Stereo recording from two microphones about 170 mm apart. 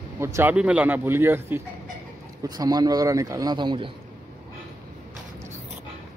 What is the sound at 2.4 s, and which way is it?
Speech, 25° right (ahead or behind).